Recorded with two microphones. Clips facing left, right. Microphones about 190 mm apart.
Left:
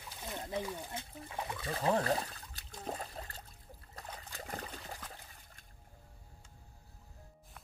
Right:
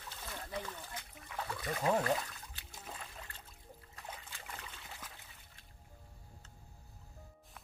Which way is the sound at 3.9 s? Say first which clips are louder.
Left 3 dB; 40° left (ahead or behind).